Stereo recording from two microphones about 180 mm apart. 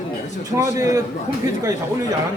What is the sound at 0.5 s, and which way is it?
Speech, 15° right (ahead or behind).